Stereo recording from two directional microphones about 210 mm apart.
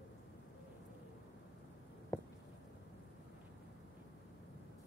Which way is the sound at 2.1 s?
15° left (ahead or behind).